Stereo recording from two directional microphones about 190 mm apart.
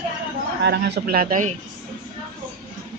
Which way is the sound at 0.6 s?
60° right (ahead or behind).